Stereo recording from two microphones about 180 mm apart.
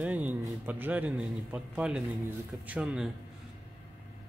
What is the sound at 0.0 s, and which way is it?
A man's voice, 10° right (ahead or behind).